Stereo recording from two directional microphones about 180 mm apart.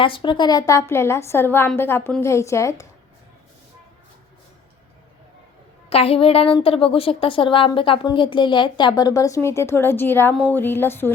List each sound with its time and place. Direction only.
0.0 s a woman's voice: 30° left (ahead or behind)
5.9 s a woman's voice: 35° left (ahead or behind); by 11.1 s 10° left (ahead or behind)